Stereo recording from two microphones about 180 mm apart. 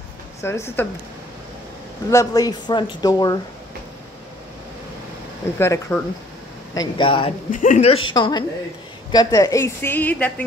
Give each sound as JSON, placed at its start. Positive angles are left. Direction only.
{"t": 0.4, "sound": "a woman's voice", "side_deg": 15}
{"t": 2.0, "sound": "speech", "side_deg": 20}
{"t": 5.6, "sound": "a woman's voice", "side_deg": 15}
{"t": 7.5, "sound": "speech", "side_deg": 45}
{"t": 8.1, "sound": "a woman's voice", "side_deg": 25}